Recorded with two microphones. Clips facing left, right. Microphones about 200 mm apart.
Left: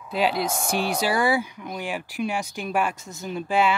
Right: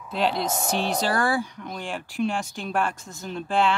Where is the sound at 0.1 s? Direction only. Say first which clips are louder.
Left 1 dB; 5° left (ahead or behind).